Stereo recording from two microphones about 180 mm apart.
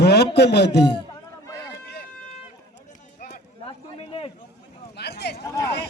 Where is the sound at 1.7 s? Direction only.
65° left (ahead or behind).